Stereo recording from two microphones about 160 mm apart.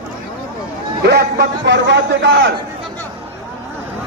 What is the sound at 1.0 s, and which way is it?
A man's voice, 90° right.